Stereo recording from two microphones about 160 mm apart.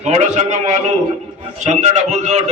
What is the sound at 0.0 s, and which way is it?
A man's voice, 45° right (ahead or behind).